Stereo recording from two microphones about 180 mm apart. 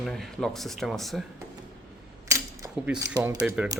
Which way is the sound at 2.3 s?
15° right (ahead or behind).